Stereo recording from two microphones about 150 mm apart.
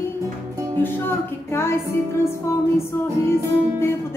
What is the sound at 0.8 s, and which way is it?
Speech, 15° left (ahead or behind).